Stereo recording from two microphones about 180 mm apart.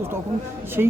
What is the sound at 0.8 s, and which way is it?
Speech, 10° right (ahead or behind).